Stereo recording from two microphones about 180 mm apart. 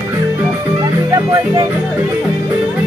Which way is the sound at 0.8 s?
25° right (ahead or behind).